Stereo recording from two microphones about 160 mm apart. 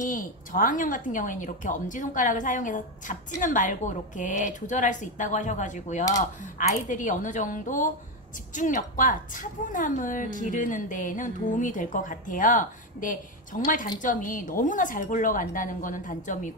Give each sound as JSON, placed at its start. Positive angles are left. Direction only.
{"t": 0.0, "sound": "a woman's voice", "side_deg": 55}